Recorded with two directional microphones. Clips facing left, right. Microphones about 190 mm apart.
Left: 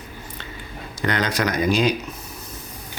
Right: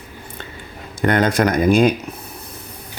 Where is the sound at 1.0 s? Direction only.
50° right (ahead or behind).